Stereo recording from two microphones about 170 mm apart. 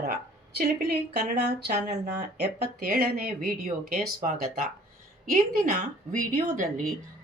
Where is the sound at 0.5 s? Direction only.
70° right (ahead or behind).